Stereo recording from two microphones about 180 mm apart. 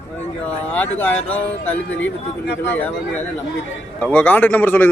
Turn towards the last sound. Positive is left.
turn(degrees=10)  # may be behind; listen again after turning